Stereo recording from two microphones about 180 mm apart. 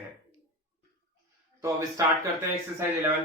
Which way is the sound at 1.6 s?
15° right (ahead or behind).